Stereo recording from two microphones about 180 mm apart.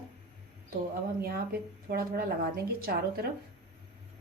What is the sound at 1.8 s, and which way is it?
A woman's voice, 55° right (ahead or behind).